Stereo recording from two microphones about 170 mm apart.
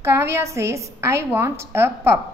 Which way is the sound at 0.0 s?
15° right (ahead or behind).